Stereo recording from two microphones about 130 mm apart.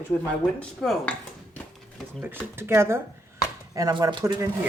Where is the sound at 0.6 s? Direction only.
5° left (ahead or behind).